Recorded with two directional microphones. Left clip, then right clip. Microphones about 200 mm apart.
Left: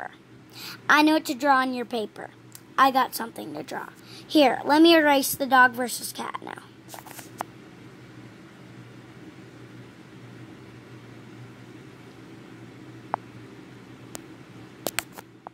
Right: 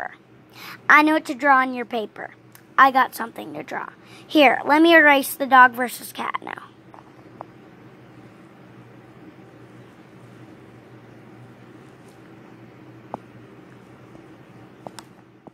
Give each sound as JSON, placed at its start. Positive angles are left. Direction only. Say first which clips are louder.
{"t": 0.6, "sound": "a woman's voice", "louder": "right 5 dB", "side_deg": 15}